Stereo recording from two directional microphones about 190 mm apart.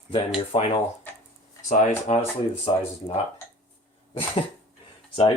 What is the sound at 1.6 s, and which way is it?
Speech, 45° left (ahead or behind).